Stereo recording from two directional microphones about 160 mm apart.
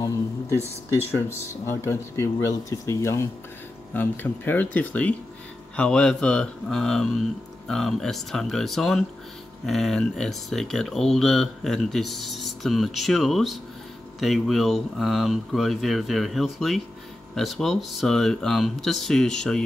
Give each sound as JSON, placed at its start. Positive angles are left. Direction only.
{"t": 1.1, "sound": "speech", "side_deg": 15}